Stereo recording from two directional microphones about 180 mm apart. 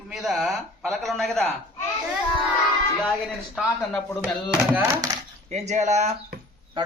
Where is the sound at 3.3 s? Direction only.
Centre (ahead or behind).